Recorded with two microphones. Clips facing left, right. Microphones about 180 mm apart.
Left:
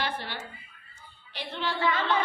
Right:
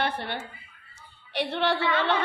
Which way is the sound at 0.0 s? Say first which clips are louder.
Right 4 dB; 60° right (ahead or behind).